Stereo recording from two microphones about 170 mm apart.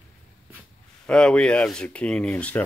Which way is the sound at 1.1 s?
5° left (ahead or behind).